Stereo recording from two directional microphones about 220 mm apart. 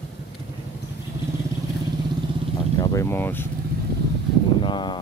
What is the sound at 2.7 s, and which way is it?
Speech, 15° left (ahead or behind).